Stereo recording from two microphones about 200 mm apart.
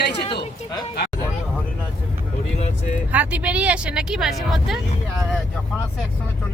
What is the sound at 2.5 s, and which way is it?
Speech, 35° left (ahead or behind).